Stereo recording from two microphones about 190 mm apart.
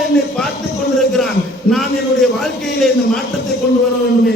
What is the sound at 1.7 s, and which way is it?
A man's voice, centre (ahead or behind).